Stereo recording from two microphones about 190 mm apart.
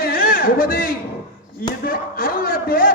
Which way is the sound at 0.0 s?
50° left (ahead or behind).